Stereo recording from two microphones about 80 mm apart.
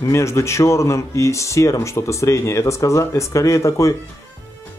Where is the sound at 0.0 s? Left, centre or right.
Left.